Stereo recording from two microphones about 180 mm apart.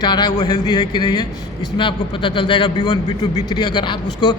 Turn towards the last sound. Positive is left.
turn(degrees=25)  # may be behind; listen again after turning